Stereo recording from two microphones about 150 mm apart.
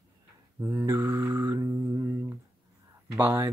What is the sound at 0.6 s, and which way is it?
Mantra, 15° right (ahead or behind).